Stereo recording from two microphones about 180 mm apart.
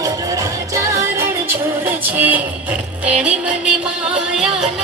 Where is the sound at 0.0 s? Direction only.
15° right (ahead or behind).